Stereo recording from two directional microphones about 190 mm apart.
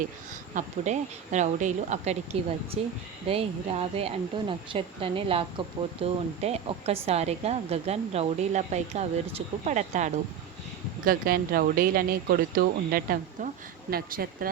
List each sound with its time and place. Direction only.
0.5 s speech: 40° right (ahead or behind)
11.0 s speech: 50° right (ahead or behind)